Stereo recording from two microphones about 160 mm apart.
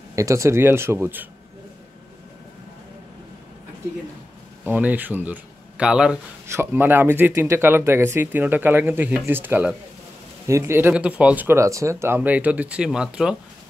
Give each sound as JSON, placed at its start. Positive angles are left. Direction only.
{"t": 0.1, "sound": "speech", "side_deg": -20}
{"t": 4.6, "sound": "speech", "side_deg": -10}